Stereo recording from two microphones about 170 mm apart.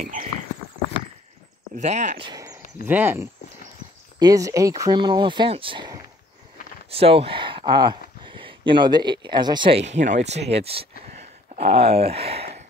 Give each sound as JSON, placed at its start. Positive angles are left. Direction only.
{"t": 0.0, "sound": "speech", "side_deg": -50}
{"t": 1.8, "sound": "speech", "side_deg": -45}
{"t": 2.2, "sound": "speech", "side_deg": -20}